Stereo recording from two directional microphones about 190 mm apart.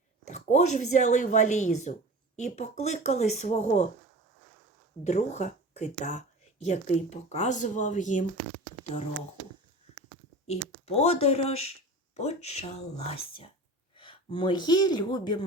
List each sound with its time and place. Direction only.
0.3 s speech: 35° left (ahead or behind)
5.0 s speech: 35° left (ahead or behind)
10.4 s speech: 35° left (ahead or behind)